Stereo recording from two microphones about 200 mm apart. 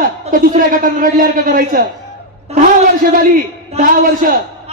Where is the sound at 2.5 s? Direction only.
30° right (ahead or behind).